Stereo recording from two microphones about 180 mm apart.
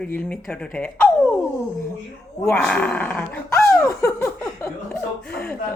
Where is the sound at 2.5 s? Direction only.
5° left (ahead or behind).